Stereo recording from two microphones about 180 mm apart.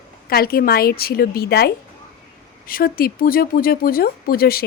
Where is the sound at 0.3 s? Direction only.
55° left (ahead or behind).